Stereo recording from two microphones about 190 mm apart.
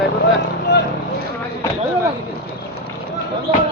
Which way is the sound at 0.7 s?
65° left (ahead or behind).